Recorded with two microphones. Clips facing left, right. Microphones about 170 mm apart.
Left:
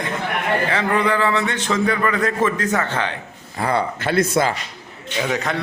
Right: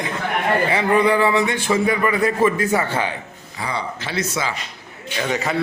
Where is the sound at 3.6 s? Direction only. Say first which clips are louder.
Left 6 dB; 55° left (ahead or behind).